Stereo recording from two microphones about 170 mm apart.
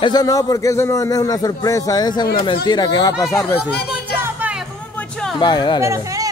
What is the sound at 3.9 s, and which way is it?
Music, 10° right (ahead or behind).